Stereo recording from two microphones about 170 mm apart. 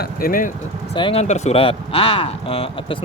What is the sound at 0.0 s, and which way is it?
Speech, 55° left (ahead or behind).